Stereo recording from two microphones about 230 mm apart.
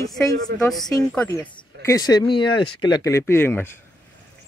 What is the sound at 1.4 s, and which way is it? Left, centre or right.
Speech, centre.